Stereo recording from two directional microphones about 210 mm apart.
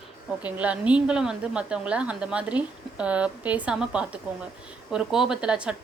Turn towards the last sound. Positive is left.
turn(degrees=-5)  # may be behind; listen again after turning